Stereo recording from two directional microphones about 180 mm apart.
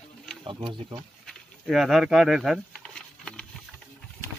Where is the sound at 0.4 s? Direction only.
30° right (ahead or behind).